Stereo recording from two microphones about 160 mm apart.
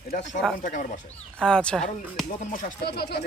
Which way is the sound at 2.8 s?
90° left.